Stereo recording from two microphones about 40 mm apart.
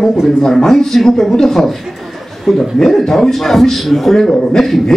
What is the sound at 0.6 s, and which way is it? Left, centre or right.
A man's voice, centre.